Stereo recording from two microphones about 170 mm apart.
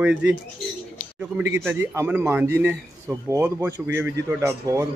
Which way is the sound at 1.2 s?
10° right (ahead or behind).